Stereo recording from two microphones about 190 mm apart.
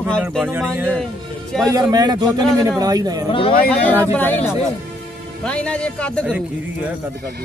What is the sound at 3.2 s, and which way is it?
Speech, 30° left (ahead or behind).